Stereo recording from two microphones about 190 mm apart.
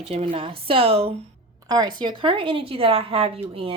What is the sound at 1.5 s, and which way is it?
A woman's voice, 20° right (ahead or behind).